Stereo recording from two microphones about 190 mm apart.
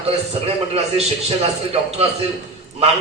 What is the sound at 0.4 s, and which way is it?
A man's voice, 30° right (ahead or behind).